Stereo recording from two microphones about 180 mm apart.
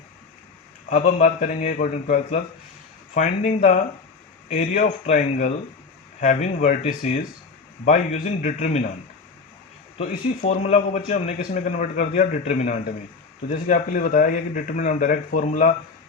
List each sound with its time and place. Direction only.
0.9 s speech: 40° left (ahead or behind)
10.1 s speech: 40° left (ahead or behind)